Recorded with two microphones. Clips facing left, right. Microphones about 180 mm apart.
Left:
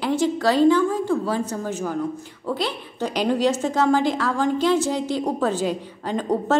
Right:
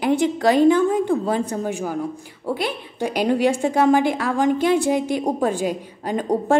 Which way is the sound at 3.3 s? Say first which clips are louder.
Right 2 dB; 55° right (ahead or behind).